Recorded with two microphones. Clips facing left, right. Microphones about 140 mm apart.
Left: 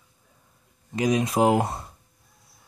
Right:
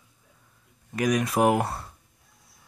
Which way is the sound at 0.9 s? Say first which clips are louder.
Left 1 dB; 25° left (ahead or behind).